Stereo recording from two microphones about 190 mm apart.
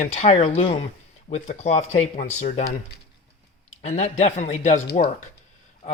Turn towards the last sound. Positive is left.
turn(degrees=40)  # may be behind; listen again after turning